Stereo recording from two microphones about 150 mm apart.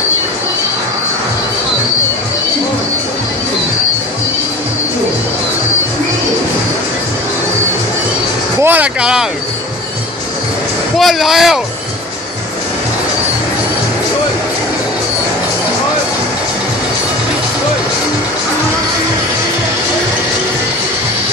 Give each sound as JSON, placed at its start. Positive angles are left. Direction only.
{"t": 8.5, "sound": "vehicle", "side_deg": -15}
{"t": 11.0, "sound": "speech", "side_deg": 0}